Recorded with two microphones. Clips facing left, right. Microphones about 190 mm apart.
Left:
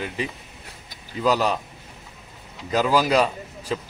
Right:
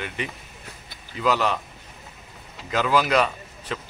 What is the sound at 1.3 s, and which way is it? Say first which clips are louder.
Speech: left 2 dB; 35° left (ahead or behind).